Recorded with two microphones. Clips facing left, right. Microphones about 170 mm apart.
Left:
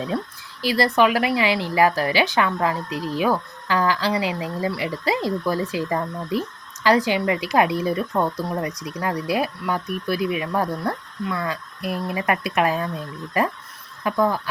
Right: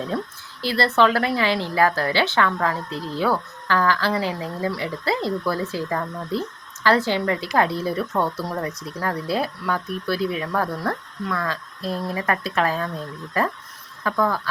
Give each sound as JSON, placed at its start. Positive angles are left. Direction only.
{"t": 0.6, "sound": "a woman's voice", "side_deg": 15}